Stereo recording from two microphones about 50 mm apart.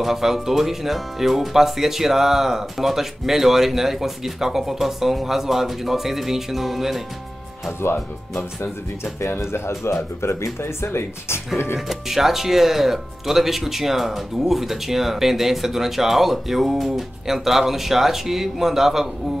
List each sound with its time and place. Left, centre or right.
0.0 s speech: centre
7.8 s speech: left
9.4 s speech: left
11.9 s speech: centre